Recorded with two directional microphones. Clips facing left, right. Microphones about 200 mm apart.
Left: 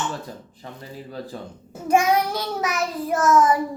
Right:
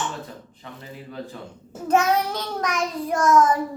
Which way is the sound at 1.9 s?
10° left (ahead or behind).